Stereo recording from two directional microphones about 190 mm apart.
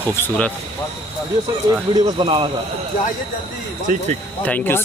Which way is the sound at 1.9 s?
25° right (ahead or behind).